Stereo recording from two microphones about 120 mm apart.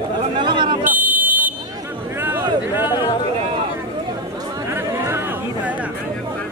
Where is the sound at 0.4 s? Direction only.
40° right (ahead or behind).